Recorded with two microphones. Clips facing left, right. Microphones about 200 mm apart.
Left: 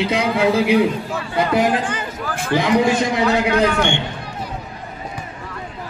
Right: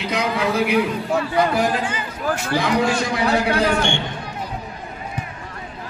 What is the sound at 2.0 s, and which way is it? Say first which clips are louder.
Speech: right 2 dB; 55° left (ahead or behind).